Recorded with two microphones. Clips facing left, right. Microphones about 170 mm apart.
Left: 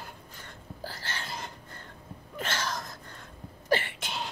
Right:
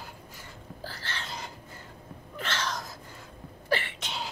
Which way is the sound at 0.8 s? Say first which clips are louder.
Left 1 dB; 40° left (ahead or behind).